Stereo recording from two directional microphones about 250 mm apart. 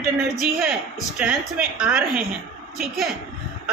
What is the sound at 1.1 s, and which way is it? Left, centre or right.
A woman's voice, centre.